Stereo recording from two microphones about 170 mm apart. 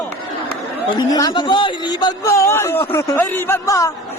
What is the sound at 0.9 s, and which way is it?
A man's voice, 25° left (ahead or behind).